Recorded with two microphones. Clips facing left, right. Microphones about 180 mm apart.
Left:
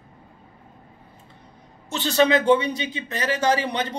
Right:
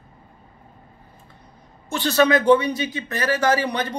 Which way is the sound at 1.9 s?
25° left (ahead or behind).